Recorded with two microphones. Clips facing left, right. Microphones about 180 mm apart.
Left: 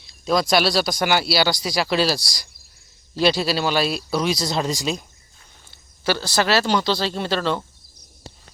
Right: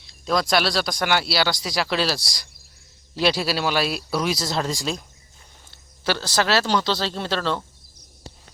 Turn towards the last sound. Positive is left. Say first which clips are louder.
# left 2 dB
turn(degrees=5)  # may be behind; listen again after turning